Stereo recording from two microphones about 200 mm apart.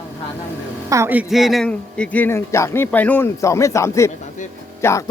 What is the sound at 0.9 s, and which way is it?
A man's voice, 10° right (ahead or behind).